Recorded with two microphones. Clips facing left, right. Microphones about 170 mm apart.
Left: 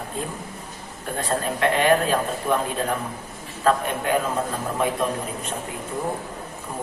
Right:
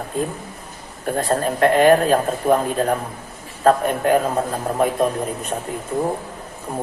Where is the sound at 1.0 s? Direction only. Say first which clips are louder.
Right 5 dB; 40° right (ahead or behind).